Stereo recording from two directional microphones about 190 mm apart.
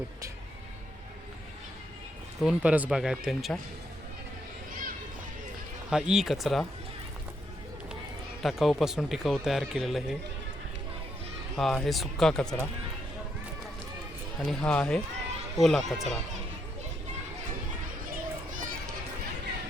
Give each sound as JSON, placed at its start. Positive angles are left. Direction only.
{"t": 2.4, "sound": "speech", "side_deg": -5}
{"t": 4.7, "sound": "a sound", "side_deg": -50}
{"t": 5.9, "sound": "speech", "side_deg": -5}
{"t": 8.4, "sound": "speech", "side_deg": 0}
{"t": 11.5, "sound": "speech", "side_deg": 0}
{"t": 14.4, "sound": "speech", "side_deg": 5}